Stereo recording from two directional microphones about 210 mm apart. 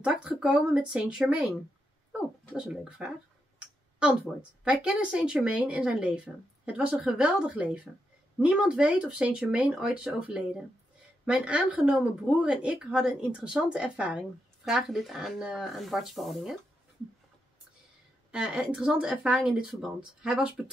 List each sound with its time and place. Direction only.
0.0 s a woman's voice: 5° right (ahead or behind)
4.6 s a woman's voice: 5° right (ahead or behind)
18.3 s a woman's voice: 5° right (ahead or behind)